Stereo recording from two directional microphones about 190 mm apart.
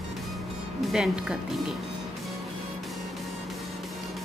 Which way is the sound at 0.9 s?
5° right (ahead or behind).